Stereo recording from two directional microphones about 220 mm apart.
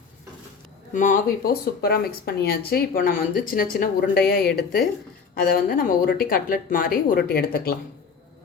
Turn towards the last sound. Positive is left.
turn(degrees=45)  # may be behind; listen again after turning